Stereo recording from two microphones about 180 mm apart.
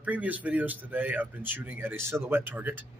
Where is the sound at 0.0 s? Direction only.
10° right (ahead or behind).